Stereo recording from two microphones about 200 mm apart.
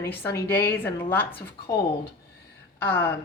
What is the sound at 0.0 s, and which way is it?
Speech, 10° left (ahead or behind).